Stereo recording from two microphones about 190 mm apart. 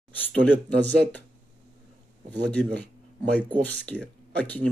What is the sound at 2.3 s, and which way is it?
Speech, 60° right (ahead or behind).